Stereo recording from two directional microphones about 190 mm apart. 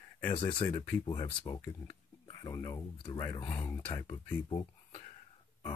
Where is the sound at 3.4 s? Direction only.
10° left (ahead or behind).